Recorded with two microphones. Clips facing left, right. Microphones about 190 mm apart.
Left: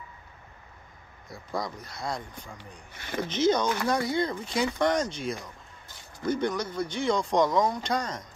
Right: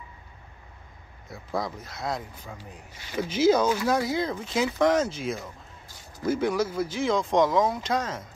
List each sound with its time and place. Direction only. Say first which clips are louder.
1.3 s speech: right 2 dB; 5° right (ahead or behind)
2.9 s speech: left 5 dB; 55° left (ahead or behind)
3.2 s speech: right 3 dB; 5° right (ahead or behind)